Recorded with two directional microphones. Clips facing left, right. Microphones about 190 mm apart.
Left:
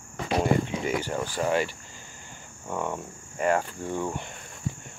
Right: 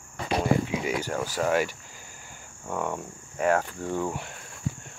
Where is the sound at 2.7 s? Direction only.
Centre (ahead or behind).